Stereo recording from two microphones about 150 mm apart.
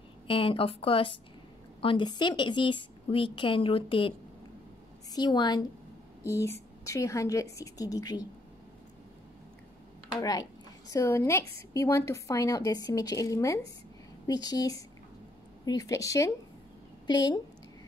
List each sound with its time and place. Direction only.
0.3 s a woman's voice: 35° left (ahead or behind)
5.1 s a woman's voice: 30° left (ahead or behind)
10.9 s a woman's voice: 20° left (ahead or behind)